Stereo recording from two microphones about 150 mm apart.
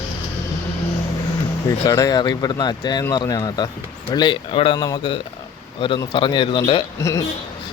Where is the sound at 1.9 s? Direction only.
25° left (ahead or behind).